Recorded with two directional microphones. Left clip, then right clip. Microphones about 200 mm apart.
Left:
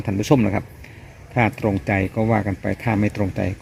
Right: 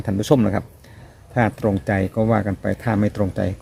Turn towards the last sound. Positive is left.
turn(degrees=-15)  # may be behind; listen again after turning